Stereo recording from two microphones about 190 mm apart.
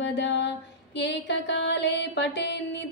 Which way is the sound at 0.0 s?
70° left (ahead or behind).